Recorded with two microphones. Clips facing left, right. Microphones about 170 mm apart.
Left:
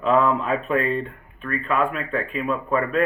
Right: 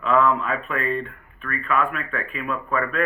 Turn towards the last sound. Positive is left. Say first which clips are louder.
# left 3 dB
turn(degrees=30)  # may be behind; listen again after turning